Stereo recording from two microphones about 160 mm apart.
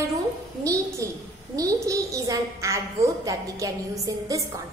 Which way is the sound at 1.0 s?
20° right (ahead or behind).